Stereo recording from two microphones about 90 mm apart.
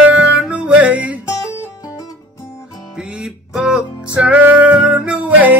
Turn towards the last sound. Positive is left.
turn(degrees=-15)  # may be behind; listen again after turning